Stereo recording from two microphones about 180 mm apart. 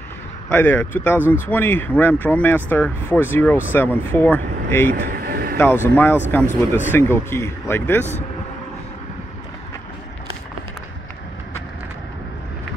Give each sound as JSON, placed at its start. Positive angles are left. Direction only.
{"t": 0.5, "sound": "speech", "side_deg": 10}
{"t": 4.9, "sound": "speech", "side_deg": -55}
{"t": 5.6, "sound": "speech", "side_deg": 10}